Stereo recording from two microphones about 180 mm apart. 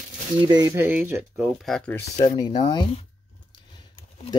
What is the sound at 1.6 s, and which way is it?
Speech, 5° left (ahead or behind).